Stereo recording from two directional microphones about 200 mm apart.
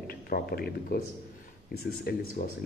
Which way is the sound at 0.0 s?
50° left (ahead or behind).